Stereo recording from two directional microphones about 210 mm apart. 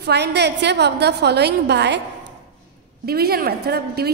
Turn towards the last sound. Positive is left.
turn(degrees=-50)  # may be behind; listen again after turning